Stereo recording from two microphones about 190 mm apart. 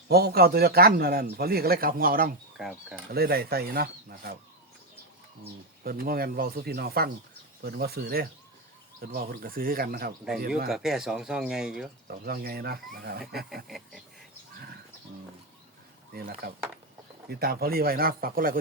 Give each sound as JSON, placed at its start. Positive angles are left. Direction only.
{"t": 0.1, "sound": "a man's voice", "side_deg": -55}
{"t": 5.8, "sound": "a man's voice", "side_deg": -50}
{"t": 10.7, "sound": "speech", "side_deg": 0}
{"t": 12.2, "sound": "a man's voice", "side_deg": -55}
{"t": 13.7, "sound": "speech", "side_deg": 0}
{"t": 16.1, "sound": "a man's voice", "side_deg": -50}